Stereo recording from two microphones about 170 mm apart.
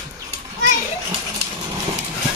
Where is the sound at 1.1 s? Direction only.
25° right (ahead or behind).